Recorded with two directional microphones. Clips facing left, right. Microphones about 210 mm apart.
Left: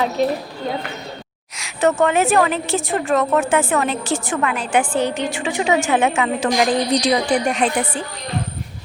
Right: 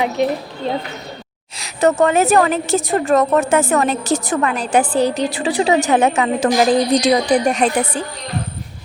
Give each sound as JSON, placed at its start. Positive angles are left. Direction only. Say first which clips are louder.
{"t": 0.0, "sound": "speech", "louder": "right 1 dB", "side_deg": -20}
{"t": 1.5, "sound": "a woman's voice", "louder": "right 2 dB", "side_deg": -35}